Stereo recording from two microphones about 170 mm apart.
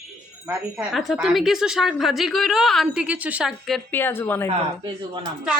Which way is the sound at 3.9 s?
10° left (ahead or behind).